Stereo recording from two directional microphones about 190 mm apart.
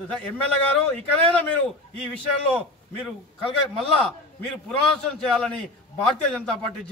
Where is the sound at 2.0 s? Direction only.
5° left (ahead or behind).